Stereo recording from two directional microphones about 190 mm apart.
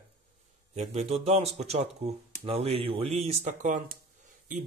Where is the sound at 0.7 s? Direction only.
35° right (ahead or behind).